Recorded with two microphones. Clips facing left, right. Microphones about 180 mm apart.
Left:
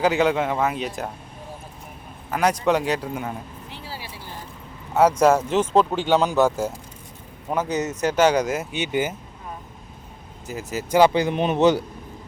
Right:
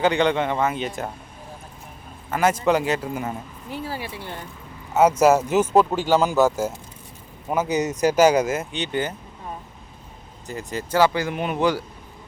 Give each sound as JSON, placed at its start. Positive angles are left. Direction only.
{"t": 0.0, "sound": "speech", "side_deg": 5}
{"t": 2.3, "sound": "speech", "side_deg": 0}
{"t": 3.7, "sound": "a sound", "side_deg": -50}
{"t": 5.2, "sound": "speech", "side_deg": -5}
{"t": 8.7, "sound": "speech", "side_deg": 10}
{"t": 10.4, "sound": "speech", "side_deg": 5}
{"t": 10.9, "sound": "speech", "side_deg": 20}